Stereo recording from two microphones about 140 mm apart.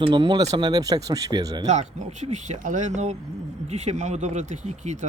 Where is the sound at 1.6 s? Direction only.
55° right (ahead or behind).